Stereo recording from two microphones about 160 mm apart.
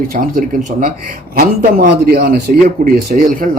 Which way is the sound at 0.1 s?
65° right (ahead or behind).